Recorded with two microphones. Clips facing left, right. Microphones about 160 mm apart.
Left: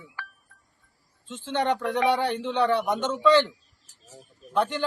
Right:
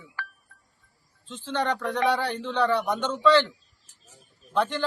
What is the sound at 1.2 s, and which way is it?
A man's voice, 20° left (ahead or behind).